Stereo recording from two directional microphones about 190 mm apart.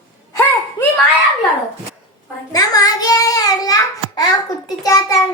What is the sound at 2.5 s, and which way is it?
Child singing, 20° left (ahead or behind).